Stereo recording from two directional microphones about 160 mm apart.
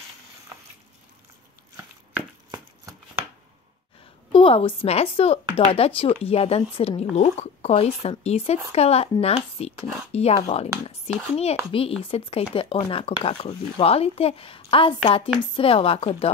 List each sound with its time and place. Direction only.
2.5 s shuffling cards: 20° right (ahead or behind)
4.3 s a woman's voice: 35° left (ahead or behind)